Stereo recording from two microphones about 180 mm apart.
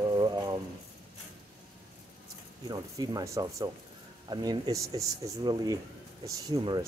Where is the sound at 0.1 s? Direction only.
25° right (ahead or behind).